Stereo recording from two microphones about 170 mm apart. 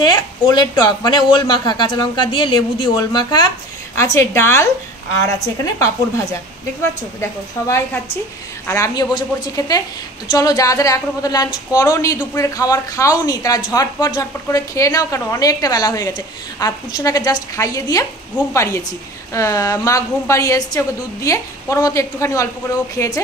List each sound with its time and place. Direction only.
0.0 s a woman's voice: 25° left (ahead or behind)